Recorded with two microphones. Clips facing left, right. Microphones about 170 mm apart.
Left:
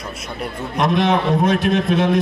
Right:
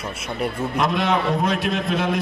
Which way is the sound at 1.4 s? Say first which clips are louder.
Left 5 dB; 50° left (ahead or behind).